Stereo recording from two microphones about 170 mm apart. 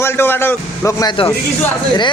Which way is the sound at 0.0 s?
15° left (ahead or behind).